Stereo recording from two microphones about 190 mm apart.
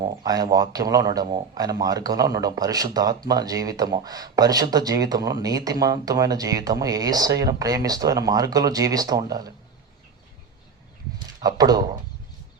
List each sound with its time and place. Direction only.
0.0 s speech: 20° right (ahead or behind)
11.3 s speech: 20° right (ahead or behind)